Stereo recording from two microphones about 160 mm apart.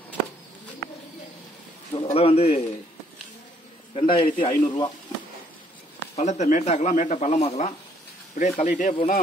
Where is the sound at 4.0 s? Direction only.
30° left (ahead or behind).